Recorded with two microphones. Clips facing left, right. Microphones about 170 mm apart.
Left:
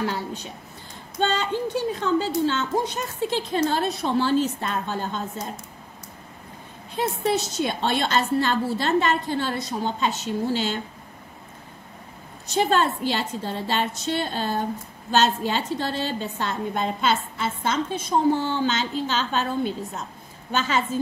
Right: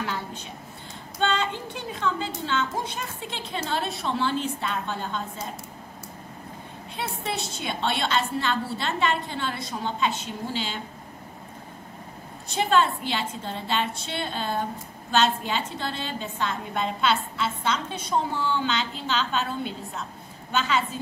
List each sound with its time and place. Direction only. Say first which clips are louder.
0.0 s a sound: left 4 dB; 40° left (ahead or behind)
1.1 s a woman's voice: left 2 dB; 35° left (ahead or behind)
7.0 s a woman's voice: left 8 dB; 40° left (ahead or behind)
12.5 s a woman's voice: left 1 dB; 40° left (ahead or behind)